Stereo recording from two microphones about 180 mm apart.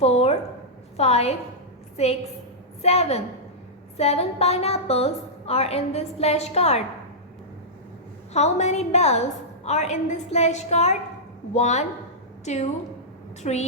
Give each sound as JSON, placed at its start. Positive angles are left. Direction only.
{"t": 0.0, "sound": "a sound", "side_deg": 35}
{"t": 0.9, "sound": "a woman's voice", "side_deg": 35}
{"t": 8.3, "sound": "a woman's voice", "side_deg": 40}
{"t": 13.4, "sound": "a woman's voice", "side_deg": 40}